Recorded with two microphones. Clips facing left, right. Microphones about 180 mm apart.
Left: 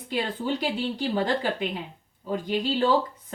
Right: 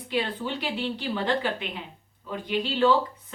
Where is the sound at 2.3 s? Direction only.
40° left (ahead or behind).